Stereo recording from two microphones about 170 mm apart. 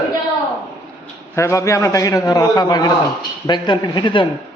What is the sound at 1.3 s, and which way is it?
A man's voice, 15° left (ahead or behind).